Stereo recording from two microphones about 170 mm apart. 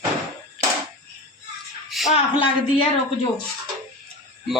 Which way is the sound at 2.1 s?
30° left (ahead or behind).